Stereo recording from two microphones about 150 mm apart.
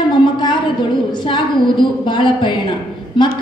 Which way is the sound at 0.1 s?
30° left (ahead or behind).